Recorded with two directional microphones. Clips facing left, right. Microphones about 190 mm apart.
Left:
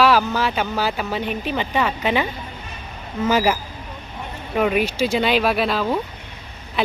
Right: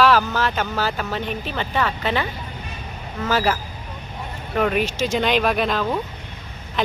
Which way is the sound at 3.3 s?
15° left (ahead or behind).